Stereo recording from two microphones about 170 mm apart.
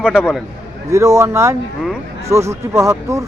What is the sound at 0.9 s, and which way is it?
Speech, 15° right (ahead or behind).